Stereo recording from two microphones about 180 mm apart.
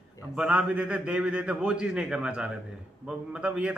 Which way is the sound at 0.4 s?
5° right (ahead or behind).